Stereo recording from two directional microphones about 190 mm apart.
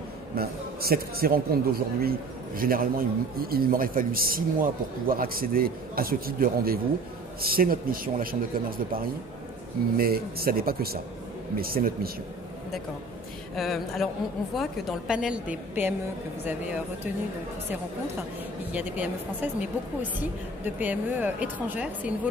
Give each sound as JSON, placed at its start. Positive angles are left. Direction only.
{"t": 0.4, "sound": "a man's voice", "side_deg": -55}
{"t": 13.6, "sound": "a woman's voice", "side_deg": 0}
{"t": 18.7, "sound": "speech", "side_deg": -10}
{"t": 20.6, "sound": "speech", "side_deg": -10}